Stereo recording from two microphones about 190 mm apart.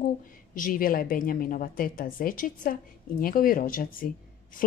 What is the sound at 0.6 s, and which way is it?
Speech, 50° left (ahead or behind).